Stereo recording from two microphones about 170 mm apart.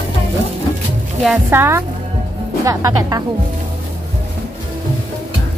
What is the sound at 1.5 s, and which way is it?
Speech, 15° right (ahead or behind).